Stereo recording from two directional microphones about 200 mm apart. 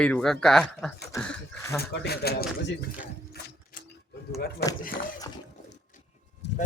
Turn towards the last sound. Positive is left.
turn(degrees=60)  # may be behind; listen again after turning